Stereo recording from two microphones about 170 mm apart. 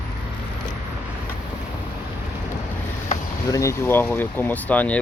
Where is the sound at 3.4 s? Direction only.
20° left (ahead or behind).